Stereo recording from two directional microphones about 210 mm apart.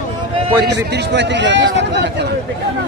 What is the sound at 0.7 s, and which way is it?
A man's voice, 55° right (ahead or behind).